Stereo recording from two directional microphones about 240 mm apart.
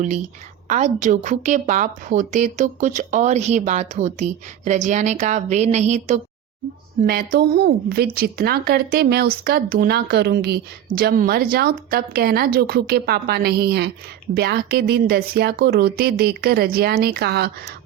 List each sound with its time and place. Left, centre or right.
0.7 s a woman's voice: right